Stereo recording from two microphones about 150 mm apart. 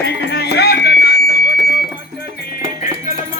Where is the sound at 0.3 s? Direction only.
90° left.